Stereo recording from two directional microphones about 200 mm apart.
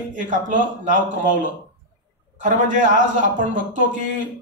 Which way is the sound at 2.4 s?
40° right (ahead or behind).